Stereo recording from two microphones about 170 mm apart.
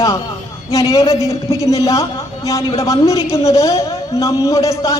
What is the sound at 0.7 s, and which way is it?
A man's voice, 20° left (ahead or behind).